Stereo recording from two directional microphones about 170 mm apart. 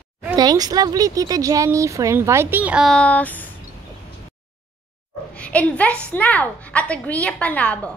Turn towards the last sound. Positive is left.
turn(degrees=10)  # may be behind; listen again after turning